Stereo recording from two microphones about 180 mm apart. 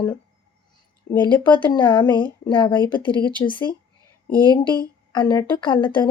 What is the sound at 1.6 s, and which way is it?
A woman's voice, 25° left (ahead or behind).